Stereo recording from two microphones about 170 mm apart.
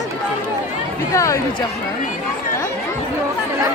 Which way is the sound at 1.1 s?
20° left (ahead or behind).